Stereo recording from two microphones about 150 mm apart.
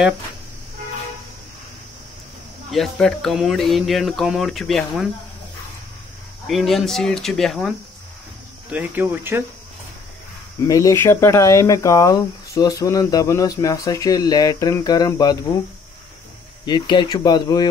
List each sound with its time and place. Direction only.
2.7 s speech: centre (ahead or behind)
6.4 s speech: centre (ahead or behind)
8.7 s speech: 10° right (ahead or behind)
10.6 s speech: 20° left (ahead or behind)
16.6 s speech: 30° left (ahead or behind)